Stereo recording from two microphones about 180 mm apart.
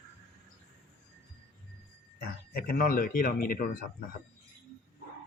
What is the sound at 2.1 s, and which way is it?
Speech, 55° left (ahead or behind).